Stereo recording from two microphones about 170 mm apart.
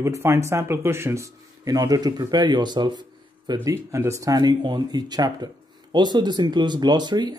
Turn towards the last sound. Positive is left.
turn(degrees=-25)  # may be behind; listen again after turning